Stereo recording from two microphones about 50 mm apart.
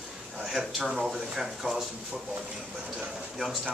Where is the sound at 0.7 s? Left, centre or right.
Centre.